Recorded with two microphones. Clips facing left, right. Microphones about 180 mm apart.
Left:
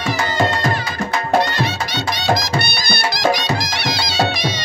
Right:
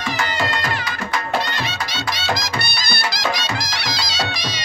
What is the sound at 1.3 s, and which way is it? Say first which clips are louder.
Music: left 6 dB; 60° left (ahead or behind).